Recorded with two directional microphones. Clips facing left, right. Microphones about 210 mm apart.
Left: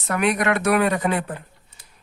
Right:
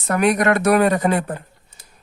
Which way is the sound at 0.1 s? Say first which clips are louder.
Right 4 dB; 40° right (ahead or behind).